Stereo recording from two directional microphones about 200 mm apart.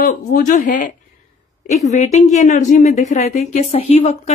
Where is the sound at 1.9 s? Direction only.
35° left (ahead or behind).